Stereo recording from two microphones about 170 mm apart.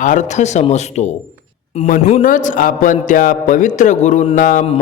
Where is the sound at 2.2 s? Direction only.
50° left (ahead or behind).